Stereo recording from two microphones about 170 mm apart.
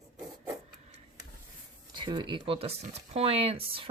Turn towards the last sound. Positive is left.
turn(degrees=-35)  # may be behind; listen again after turning